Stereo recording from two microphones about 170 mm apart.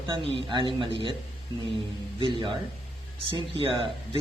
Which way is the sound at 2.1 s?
30° right (ahead or behind).